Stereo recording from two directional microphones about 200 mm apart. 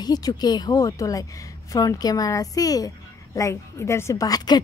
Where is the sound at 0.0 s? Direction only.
20° left (ahead or behind).